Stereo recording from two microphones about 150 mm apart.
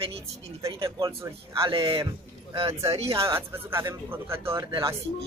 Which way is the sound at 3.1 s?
15° right (ahead or behind).